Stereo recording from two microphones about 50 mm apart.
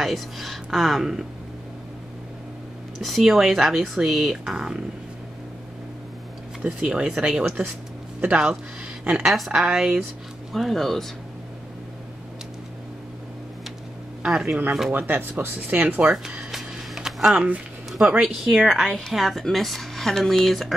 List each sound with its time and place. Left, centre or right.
0.0 s speech: centre
3.0 s speech: centre
6.6 s speech: right
7.2 s speech: centre
9.2 s speech: centre
10.5 s speech: centre
14.2 s speech: centre
14.9 s speech: right
16.1 s speech: centre
16.5 s a sound: centre
18.2 s speech: centre